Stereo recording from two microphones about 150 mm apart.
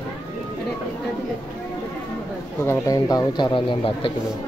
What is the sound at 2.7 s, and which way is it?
Speech, 25° left (ahead or behind).